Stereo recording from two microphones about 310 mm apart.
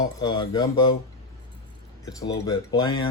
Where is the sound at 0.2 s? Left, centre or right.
Centre.